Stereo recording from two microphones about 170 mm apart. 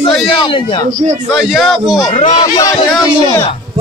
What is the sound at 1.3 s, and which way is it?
Speech, centre (ahead or behind).